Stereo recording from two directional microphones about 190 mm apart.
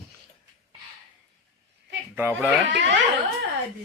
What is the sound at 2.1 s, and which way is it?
Speech, 10° right (ahead or behind).